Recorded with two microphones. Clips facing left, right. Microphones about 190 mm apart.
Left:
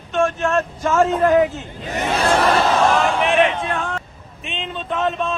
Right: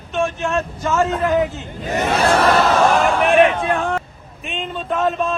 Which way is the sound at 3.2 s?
50° right (ahead or behind).